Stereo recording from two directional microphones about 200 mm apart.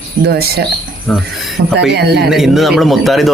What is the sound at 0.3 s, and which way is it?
Speech, 50° right (ahead or behind).